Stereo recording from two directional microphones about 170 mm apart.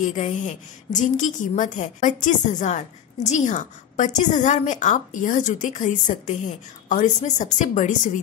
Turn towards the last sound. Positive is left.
turn(degrees=50)  # may be behind; listen again after turning